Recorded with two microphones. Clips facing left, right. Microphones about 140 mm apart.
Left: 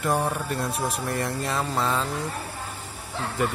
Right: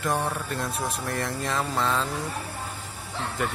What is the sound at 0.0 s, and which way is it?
Speech, 5° left (ahead or behind).